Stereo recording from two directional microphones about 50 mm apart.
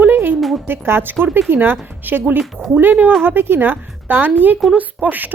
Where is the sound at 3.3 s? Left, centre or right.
Right.